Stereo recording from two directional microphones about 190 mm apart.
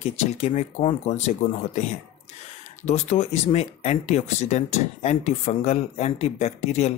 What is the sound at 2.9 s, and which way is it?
Speech, 35° left (ahead or behind).